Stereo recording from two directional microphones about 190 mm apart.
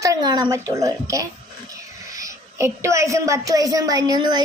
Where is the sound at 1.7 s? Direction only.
20° right (ahead or behind).